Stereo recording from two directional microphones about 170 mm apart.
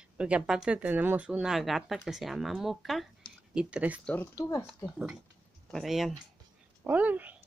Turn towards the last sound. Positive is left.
turn(degrees=-10)  # may be behind; listen again after turning